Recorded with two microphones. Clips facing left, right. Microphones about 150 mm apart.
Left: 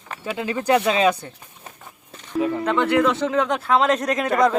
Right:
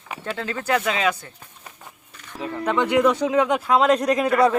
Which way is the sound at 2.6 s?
15° right (ahead or behind).